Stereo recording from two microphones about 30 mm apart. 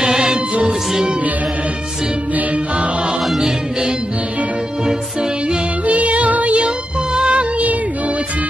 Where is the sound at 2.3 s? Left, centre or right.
Right.